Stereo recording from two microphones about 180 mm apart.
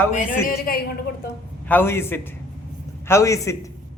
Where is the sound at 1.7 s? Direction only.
10° left (ahead or behind).